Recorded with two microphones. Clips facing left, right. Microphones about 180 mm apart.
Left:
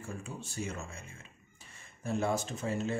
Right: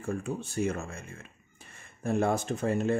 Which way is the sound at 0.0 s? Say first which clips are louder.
Right 9 dB; 60° right (ahead or behind).